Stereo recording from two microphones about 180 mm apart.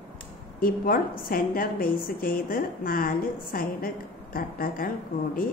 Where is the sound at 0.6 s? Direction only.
55° left (ahead or behind).